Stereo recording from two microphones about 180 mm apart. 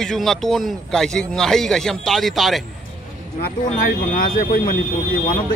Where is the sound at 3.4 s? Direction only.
50° left (ahead or behind).